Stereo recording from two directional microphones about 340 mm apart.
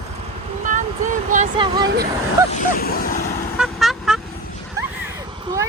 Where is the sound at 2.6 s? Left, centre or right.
Left.